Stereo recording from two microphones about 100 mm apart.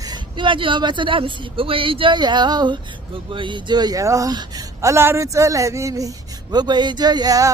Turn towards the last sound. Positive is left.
turn(degrees=-35)  # may be behind; listen again after turning